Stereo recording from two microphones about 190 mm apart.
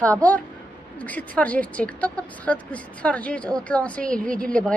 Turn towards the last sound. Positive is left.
turn(degrees=5)  # may be behind; listen again after turning